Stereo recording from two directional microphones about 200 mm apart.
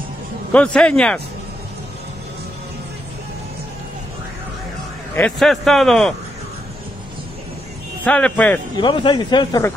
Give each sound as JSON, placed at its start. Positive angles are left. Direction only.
{"t": 0.5, "sound": "a man's voice", "side_deg": 5}
{"t": 5.1, "sound": "a man's voice", "side_deg": 5}
{"t": 8.0, "sound": "speech", "side_deg": 5}
{"t": 8.7, "sound": "speech", "side_deg": 20}